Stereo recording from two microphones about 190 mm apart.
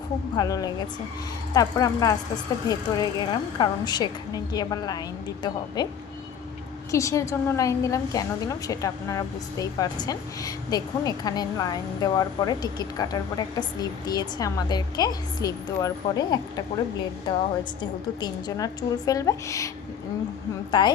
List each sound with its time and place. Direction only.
0.3 s a woman's voice: 20° left (ahead or behind)
6.9 s a woman's voice: 15° left (ahead or behind)
18.2 s a woman's voice: 20° left (ahead or behind)